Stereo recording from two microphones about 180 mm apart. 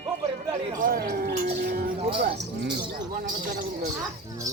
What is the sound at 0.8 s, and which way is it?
Speech, 55° right (ahead or behind).